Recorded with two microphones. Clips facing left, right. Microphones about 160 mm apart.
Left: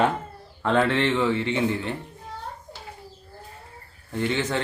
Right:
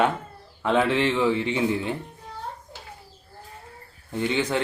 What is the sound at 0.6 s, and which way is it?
A man's voice, 5° right (ahead or behind).